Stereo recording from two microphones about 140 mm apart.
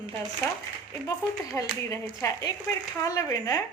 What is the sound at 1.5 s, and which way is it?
A woman's voice, 20° left (ahead or behind).